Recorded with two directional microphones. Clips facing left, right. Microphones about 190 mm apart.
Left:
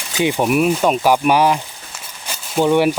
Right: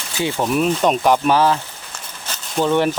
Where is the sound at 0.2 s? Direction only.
15° left (ahead or behind).